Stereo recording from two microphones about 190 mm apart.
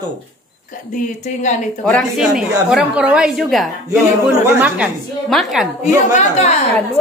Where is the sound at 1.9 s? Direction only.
5° left (ahead or behind).